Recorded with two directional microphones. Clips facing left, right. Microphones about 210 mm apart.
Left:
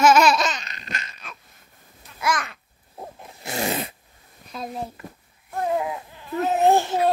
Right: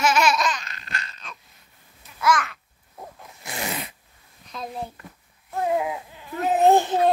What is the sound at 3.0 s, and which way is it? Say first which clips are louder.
Wild animals: left 3 dB; 30° left (ahead or behind).